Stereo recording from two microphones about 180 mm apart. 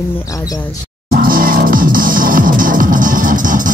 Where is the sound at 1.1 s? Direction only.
50° right (ahead or behind).